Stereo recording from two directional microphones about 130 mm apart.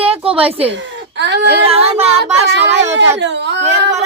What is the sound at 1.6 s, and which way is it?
Speech, 50° right (ahead or behind).